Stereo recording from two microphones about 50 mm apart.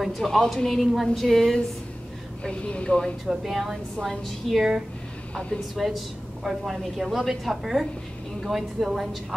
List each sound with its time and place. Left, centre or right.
0.0 s a woman's voice: centre
2.4 s speech: left
3.3 s a woman's voice: centre
5.3 s a woman's voice: centre
5.8 s a woman's voice: centre